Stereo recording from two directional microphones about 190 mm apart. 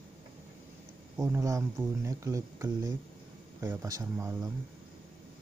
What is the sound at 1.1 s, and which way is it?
Speech, 15° right (ahead or behind).